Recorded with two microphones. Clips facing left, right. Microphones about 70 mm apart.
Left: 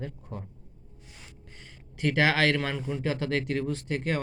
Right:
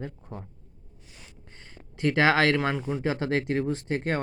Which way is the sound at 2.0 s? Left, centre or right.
Right.